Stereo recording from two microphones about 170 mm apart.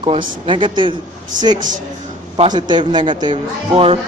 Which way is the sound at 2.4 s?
25° right (ahead or behind).